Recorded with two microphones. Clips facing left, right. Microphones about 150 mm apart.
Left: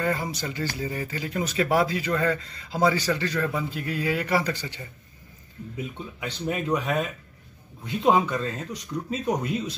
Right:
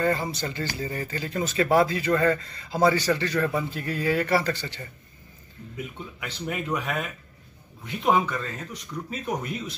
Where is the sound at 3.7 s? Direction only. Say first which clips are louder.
Right 2 dB; 10° left (ahead or behind).